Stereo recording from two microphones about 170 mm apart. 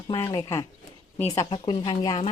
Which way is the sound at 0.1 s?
25° left (ahead or behind).